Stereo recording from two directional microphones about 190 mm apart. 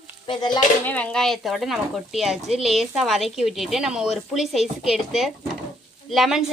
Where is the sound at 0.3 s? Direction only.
20° left (ahead or behind).